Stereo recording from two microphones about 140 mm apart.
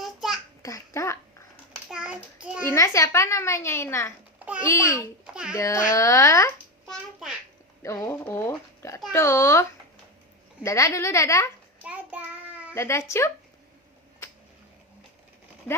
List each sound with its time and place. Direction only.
0.0 s a sound: centre (ahead or behind)
0.6 s babbling: 20° left (ahead or behind)
1.7 s child singing: 5° right (ahead or behind)
2.6 s a child's voice: 20° left (ahead or behind)
5.2 s a sound: 5° right (ahead or behind)
5.5 s a child's voice: 20° left (ahead or behind)
6.8 s a sound: centre (ahead or behind)
7.8 s a child's voice: 20° left (ahead or behind)
11.8 s child singing: 10° right (ahead or behind)
12.7 s a child's voice: 20° left (ahead or behind)